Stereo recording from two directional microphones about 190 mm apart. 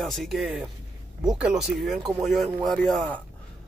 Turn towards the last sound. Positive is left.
turn(degrees=0)  # may be behind; listen again after turning